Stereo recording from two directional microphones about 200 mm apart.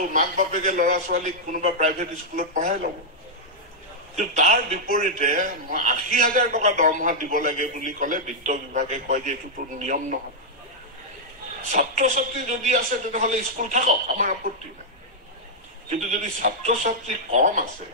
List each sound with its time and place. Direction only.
0.1 s speech: 40° right (ahead or behind)
4.2 s speech: 40° right (ahead or behind)
11.7 s speech: 40° right (ahead or behind)
15.9 s speech: 40° right (ahead or behind)